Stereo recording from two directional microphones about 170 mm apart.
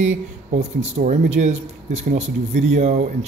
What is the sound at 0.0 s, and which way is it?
Speech, 45° right (ahead or behind).